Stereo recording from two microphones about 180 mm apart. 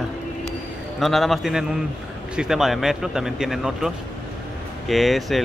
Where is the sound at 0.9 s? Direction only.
Centre (ahead or behind).